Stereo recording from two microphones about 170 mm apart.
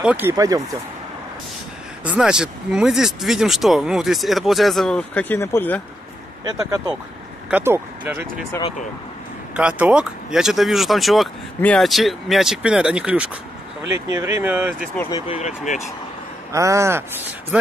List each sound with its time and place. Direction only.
0.0 s speech: 10° right (ahead or behind)
2.0 s speech: 5° right (ahead or behind); by 5.8 s 15° left (ahead or behind)
7.5 s speech: 10° right (ahead or behind)
8.5 s speech: 25° left (ahead or behind)
9.6 s speech: 5° right (ahead or behind)
15.0 s speech: 25° left (ahead or behind)
15.3 s speech: 45° left (ahead or behind)
16.5 s speech: 20° right (ahead or behind)